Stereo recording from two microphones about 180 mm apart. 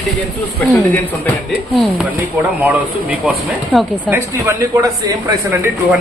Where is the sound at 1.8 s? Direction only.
5° right (ahead or behind).